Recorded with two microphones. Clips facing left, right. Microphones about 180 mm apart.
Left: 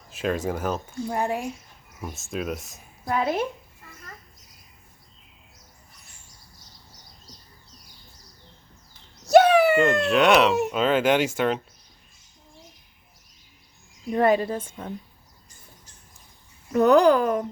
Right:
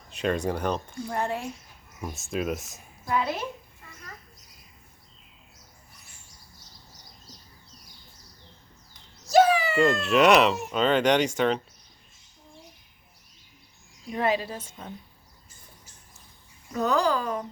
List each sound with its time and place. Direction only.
0.1 s speech: centre (ahead or behind)
2.0 s speech: centre (ahead or behind)
3.1 s a woman's voice: 50° left (ahead or behind)
9.2 s bird: 65° left (ahead or behind)
10.0 s speech: centre (ahead or behind)
14.1 s a woman's voice: 45° left (ahead or behind)
16.7 s speech: 60° left (ahead or behind)